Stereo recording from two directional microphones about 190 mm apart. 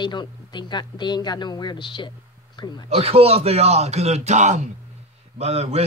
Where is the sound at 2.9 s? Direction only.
30° right (ahead or behind).